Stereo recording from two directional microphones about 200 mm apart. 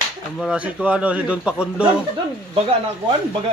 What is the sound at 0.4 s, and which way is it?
A man's voice, 5° right (ahead or behind).